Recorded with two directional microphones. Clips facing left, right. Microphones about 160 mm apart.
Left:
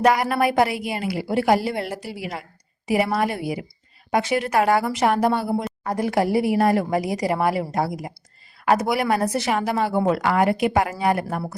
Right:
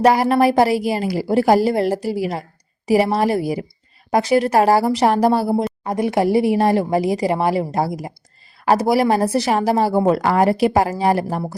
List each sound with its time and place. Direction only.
0.0 s a woman's voice: 35° right (ahead or behind)
5.8 s a woman's voice: 20° right (ahead or behind)